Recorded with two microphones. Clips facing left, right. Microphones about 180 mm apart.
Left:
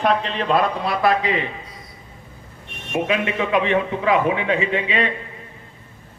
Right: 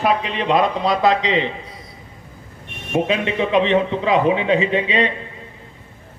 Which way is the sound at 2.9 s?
25° right (ahead or behind).